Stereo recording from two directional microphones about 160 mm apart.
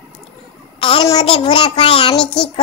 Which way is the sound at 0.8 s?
35° left (ahead or behind).